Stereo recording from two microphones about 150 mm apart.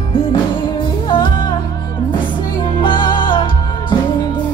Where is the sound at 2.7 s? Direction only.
30° left (ahead or behind).